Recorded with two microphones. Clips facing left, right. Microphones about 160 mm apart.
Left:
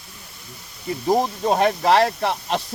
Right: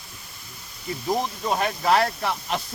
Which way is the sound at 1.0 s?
35° left (ahead or behind).